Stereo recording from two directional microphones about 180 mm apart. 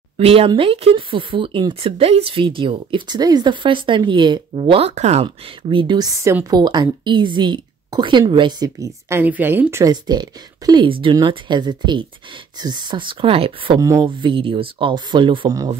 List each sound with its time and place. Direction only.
0.2 s speech: 30° right (ahead or behind)
13.7 s speech: 20° right (ahead or behind)